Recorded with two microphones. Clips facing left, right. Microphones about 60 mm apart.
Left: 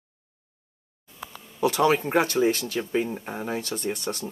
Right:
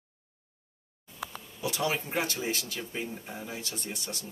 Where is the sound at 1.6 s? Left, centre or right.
Left.